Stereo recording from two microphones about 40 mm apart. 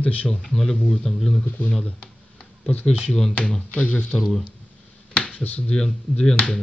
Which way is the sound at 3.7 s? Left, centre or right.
Left.